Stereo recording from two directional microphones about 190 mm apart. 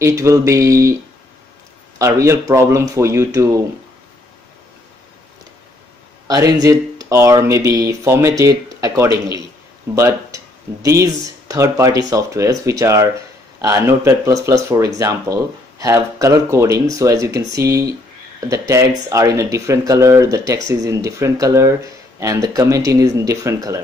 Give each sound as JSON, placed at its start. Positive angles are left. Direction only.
{"t": 0.0, "sound": "speech", "side_deg": -15}
{"t": 2.0, "sound": "speech", "side_deg": -15}
{"t": 6.2, "sound": "speech", "side_deg": -20}